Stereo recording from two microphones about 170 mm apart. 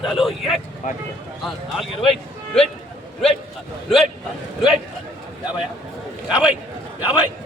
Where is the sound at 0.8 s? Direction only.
45° left (ahead or behind).